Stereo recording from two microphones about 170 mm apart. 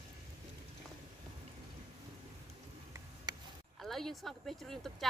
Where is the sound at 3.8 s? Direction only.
Centre (ahead or behind).